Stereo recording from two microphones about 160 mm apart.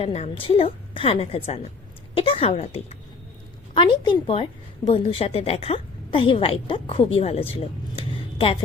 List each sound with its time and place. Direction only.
0.0 s a woman's voice: 40° left (ahead or behind)